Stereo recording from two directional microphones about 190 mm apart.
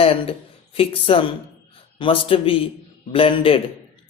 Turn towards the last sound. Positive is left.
turn(degrees=30)  # may be behind; listen again after turning